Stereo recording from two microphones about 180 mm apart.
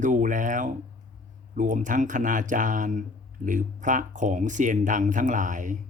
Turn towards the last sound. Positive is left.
turn(degrees=-45)  # may be behind; listen again after turning